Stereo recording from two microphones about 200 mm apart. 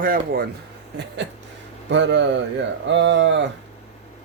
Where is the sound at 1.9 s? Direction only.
65° right (ahead or behind).